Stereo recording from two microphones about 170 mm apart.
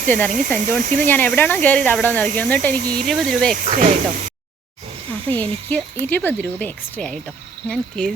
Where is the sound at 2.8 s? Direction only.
60° right (ahead or behind).